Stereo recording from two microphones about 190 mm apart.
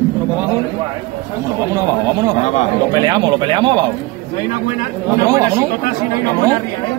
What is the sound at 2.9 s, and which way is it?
Speech, 20° right (ahead or behind).